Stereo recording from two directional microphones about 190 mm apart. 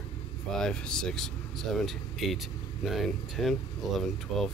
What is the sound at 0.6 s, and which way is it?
Speech, 5° left (ahead or behind).